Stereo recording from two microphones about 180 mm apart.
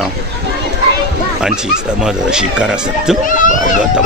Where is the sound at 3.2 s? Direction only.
50° left (ahead or behind).